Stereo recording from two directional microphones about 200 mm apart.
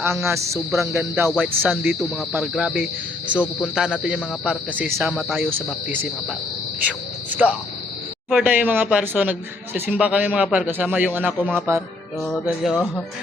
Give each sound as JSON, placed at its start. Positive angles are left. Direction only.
{"t": 0.3, "sound": "a man's voice", "side_deg": -15}
{"t": 1.3, "sound": "a man's voice", "side_deg": 0}
{"t": 6.8, "sound": "a man's voice", "side_deg": -10}
{"t": 11.3, "sound": "a man's voice", "side_deg": 5}